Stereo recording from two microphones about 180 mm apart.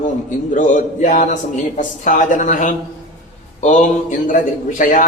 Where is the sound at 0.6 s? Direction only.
45° left (ahead or behind).